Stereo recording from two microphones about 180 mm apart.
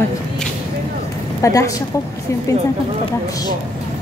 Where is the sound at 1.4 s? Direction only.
15° left (ahead or behind).